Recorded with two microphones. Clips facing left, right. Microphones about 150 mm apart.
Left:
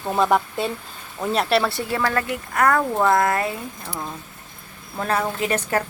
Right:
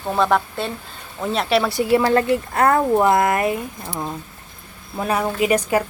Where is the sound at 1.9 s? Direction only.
25° right (ahead or behind).